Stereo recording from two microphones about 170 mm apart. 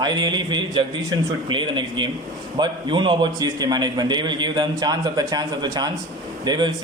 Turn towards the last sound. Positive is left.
turn(degrees=-25)  # may be behind; listen again after turning